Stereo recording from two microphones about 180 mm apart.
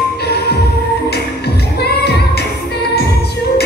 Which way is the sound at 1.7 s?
65° left (ahead or behind).